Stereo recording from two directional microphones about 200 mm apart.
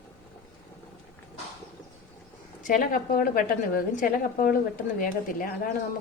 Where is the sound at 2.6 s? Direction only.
40° left (ahead or behind).